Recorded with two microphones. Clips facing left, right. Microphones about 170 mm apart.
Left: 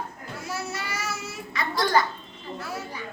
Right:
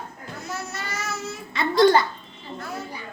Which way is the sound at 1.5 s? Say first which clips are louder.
Right 9 dB; 25° right (ahead or behind).